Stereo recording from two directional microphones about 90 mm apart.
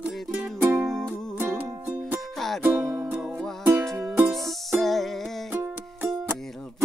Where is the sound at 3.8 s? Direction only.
35° right (ahead or behind).